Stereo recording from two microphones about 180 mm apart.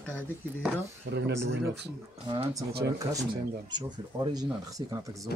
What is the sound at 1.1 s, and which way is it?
Speech, 70° right (ahead or behind).